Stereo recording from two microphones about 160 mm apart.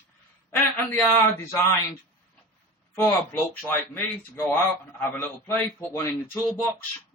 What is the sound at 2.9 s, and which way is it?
A man's voice, 15° left (ahead or behind).